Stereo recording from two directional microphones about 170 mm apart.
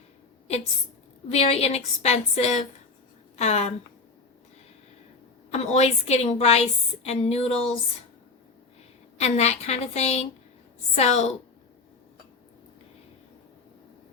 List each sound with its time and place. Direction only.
1.3 s a woman's voice: 35° left (ahead or behind)
5.5 s a woman's voice: 40° left (ahead or behind)
9.1 s a woman's voice: 40° left (ahead or behind)